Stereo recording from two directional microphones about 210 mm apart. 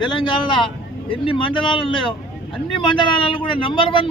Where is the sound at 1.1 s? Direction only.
25° left (ahead or behind).